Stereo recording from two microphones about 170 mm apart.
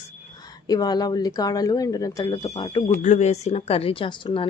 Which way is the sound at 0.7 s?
25° left (ahead or behind).